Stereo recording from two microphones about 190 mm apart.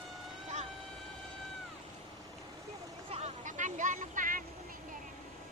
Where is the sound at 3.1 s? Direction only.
40° right (ahead or behind).